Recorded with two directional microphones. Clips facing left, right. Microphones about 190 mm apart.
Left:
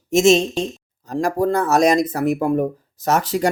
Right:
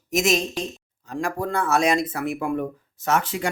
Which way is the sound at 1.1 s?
40° left (ahead or behind).